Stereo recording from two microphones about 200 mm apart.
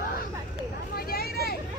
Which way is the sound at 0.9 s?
50° left (ahead or behind).